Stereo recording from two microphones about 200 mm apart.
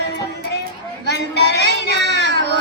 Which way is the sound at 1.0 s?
55° left (ahead or behind).